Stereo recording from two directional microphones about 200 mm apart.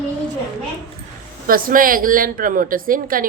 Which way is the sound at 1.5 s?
45° right (ahead or behind).